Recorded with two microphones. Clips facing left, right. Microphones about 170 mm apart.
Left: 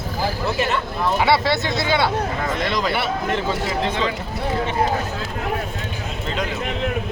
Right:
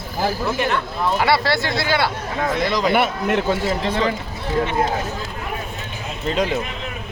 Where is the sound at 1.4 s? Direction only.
20° left (ahead or behind).